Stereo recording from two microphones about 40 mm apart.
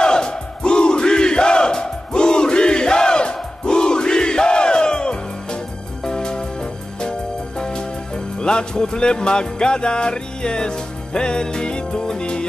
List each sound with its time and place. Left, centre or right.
0.0 s battle cry: left
6.0 s music: centre